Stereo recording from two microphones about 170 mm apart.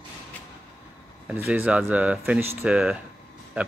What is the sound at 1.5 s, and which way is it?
A man's voice, 5° right (ahead or behind).